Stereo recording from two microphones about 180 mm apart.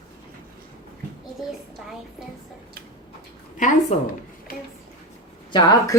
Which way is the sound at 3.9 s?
35° left (ahead or behind).